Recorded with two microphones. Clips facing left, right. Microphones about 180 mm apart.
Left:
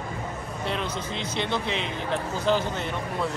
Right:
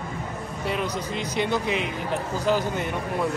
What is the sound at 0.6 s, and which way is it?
Speech, 10° right (ahead or behind).